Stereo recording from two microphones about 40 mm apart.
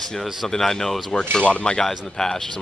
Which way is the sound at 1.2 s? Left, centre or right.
Left.